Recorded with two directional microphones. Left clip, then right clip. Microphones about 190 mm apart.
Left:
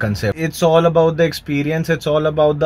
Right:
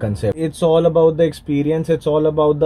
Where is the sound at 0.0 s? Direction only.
10° left (ahead or behind).